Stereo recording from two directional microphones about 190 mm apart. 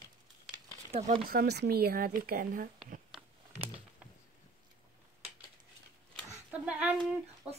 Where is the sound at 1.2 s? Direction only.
50° right (ahead or behind).